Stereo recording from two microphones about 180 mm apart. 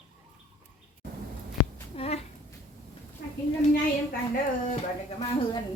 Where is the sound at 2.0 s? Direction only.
35° left (ahead or behind).